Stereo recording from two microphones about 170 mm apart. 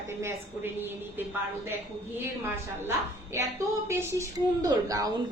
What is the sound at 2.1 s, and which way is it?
A woman's voice, 15° right (ahead or behind).